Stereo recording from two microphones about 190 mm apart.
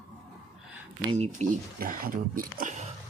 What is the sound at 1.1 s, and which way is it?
Speech, 35° right (ahead or behind).